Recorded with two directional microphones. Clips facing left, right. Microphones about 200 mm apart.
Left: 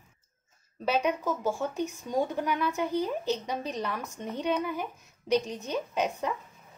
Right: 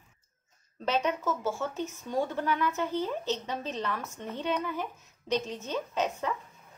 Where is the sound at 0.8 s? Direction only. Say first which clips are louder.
Left 2 dB; 10° left (ahead or behind).